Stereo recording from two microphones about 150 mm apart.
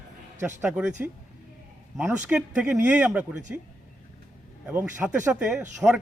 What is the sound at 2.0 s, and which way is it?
Speech, 10° right (ahead or behind).